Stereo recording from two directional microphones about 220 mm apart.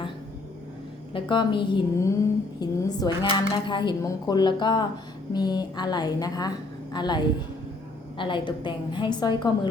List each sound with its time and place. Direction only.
1.1 s speech: 20° left (ahead or behind)
8.2 s speech: 20° left (ahead or behind)